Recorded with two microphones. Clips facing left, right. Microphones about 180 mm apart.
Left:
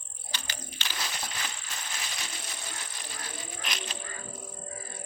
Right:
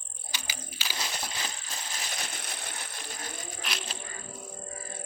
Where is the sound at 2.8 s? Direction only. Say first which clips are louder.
Right 2 dB; 50° right (ahead or behind).